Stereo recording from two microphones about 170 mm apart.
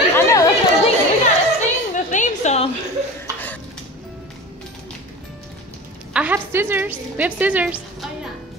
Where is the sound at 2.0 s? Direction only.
45° left (ahead or behind).